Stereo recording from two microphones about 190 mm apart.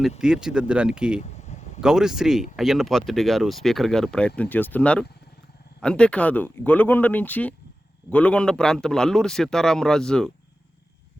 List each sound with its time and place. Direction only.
0.2 s speech: 5° right (ahead or behind)
1.2 s a sound: 35° left (ahead or behind)
1.8 s speech: 5° right (ahead or behind)